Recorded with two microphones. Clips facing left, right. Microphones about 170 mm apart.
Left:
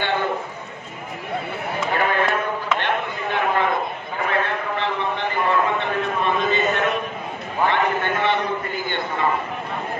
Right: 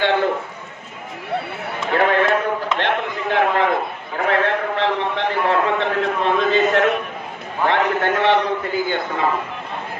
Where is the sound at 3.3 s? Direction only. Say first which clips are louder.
Right 3 dB; 80° right.